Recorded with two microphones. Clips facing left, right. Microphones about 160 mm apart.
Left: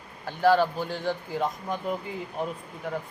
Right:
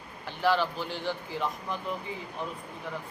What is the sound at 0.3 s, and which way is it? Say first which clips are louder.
A man's voice: left 5 dB; 45° left (ahead or behind).